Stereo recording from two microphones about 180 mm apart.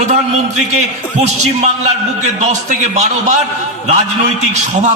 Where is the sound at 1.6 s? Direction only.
40° right (ahead or behind).